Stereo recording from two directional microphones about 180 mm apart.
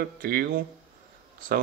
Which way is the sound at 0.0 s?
55° right (ahead or behind).